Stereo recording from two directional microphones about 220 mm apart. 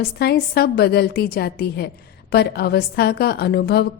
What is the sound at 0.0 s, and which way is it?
A woman's voice, 45° left (ahead or behind).